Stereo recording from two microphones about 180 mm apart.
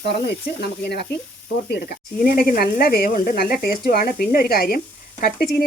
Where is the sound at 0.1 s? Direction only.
65° left (ahead or behind).